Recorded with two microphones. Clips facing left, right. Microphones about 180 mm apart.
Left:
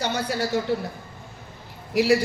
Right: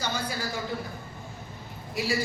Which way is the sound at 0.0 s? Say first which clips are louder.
Left 6 dB; 70° left (ahead or behind).